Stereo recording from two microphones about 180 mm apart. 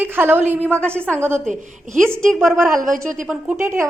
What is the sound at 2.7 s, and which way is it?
Speech, 50° right (ahead or behind).